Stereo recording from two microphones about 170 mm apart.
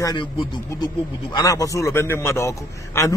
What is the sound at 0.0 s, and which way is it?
A man's voice, 25° left (ahead or behind).